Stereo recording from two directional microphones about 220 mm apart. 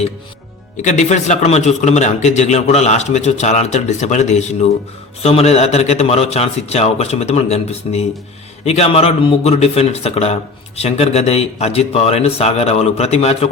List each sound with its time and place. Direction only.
0.8 s a man's voice: 35° left (ahead or behind)